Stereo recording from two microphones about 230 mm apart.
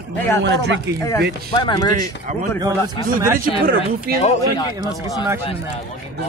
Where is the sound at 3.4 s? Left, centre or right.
Right.